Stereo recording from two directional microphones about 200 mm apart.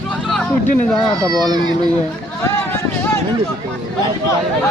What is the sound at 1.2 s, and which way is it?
Speech, 20° right (ahead or behind).